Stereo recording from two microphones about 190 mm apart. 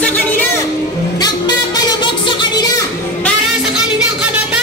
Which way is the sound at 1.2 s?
20° left (ahead or behind).